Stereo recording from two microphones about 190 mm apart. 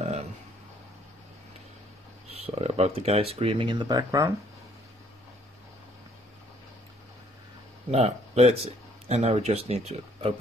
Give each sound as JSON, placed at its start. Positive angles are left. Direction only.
{"t": 2.3, "sound": "speech", "side_deg": -30}
{"t": 7.9, "sound": "speech", "side_deg": -35}